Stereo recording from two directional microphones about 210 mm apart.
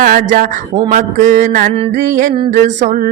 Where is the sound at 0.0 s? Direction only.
40° right (ahead or behind).